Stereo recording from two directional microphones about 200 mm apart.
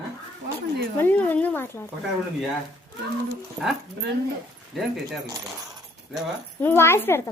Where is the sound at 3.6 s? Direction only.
5° left (ahead or behind).